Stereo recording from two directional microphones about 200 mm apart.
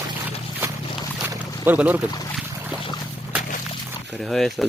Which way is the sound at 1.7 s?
10° right (ahead or behind).